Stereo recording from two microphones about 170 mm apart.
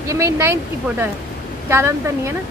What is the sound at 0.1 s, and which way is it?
Speech, 15° right (ahead or behind).